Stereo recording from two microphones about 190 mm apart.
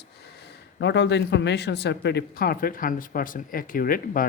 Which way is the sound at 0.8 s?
65° left (ahead or behind).